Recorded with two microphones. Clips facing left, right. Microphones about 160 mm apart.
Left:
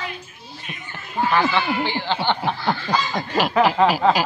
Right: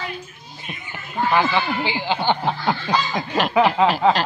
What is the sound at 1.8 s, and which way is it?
Speech, 10° right (ahead or behind).